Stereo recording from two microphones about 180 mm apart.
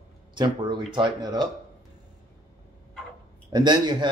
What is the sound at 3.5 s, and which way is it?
Speech, 25° right (ahead or behind).